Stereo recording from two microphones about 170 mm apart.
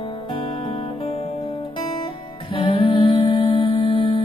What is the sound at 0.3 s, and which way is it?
Music, 30° left (ahead or behind).